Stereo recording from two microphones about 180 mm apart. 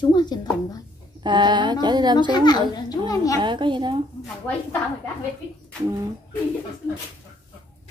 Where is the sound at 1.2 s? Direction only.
25° right (ahead or behind).